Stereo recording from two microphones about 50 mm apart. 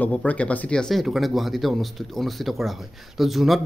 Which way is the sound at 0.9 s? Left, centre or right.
Centre.